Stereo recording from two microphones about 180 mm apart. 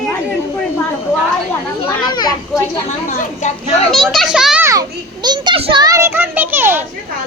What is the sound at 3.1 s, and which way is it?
Speech, 40° left (ahead or behind).